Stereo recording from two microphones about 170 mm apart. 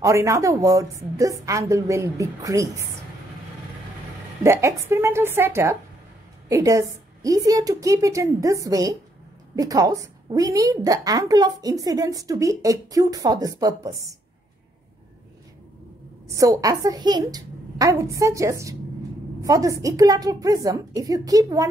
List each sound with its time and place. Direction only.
0.0 s a woman's voice: 15° right (ahead or behind)
4.4 s a woman's voice: 15° right (ahead or behind)
16.3 s a woman's voice: 20° right (ahead or behind)